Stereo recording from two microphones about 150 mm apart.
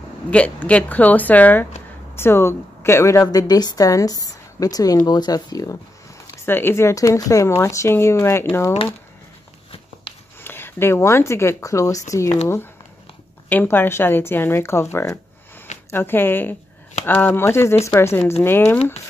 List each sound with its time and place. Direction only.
0.3 s a woman's voice: 10° left (ahead or behind)
10.4 s speech: 15° left (ahead or behind)
13.5 s speech: 10° left (ahead or behind)